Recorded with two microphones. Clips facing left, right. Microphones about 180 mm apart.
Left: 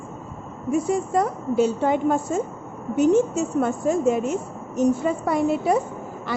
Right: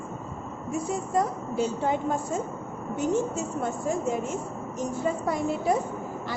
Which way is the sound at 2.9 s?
75° left (ahead or behind).